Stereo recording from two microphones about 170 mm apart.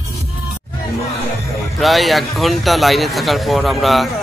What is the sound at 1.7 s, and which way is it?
Speech, centre (ahead or behind).